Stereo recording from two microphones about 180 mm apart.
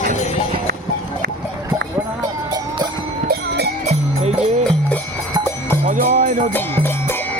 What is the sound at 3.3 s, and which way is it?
Music, 65° right (ahead or behind).